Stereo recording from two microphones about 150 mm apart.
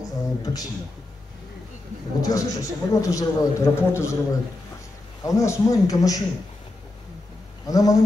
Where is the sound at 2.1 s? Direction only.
25° left (ahead or behind).